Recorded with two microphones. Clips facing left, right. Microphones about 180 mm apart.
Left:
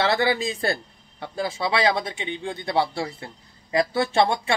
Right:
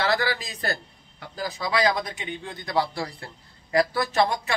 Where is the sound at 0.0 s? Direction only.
25° left (ahead or behind).